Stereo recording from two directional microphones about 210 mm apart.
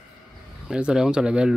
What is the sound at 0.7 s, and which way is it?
Speech, 5° right (ahead or behind).